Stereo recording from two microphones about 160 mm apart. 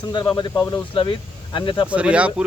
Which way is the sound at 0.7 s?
30° left (ahead or behind).